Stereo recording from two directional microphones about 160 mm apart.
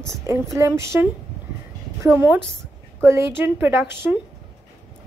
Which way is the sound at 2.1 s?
10° right (ahead or behind).